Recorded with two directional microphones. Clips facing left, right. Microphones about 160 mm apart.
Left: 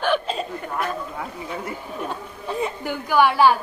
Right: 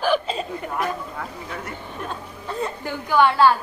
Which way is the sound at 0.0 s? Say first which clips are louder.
Right 1 dB; centre (ahead or behind).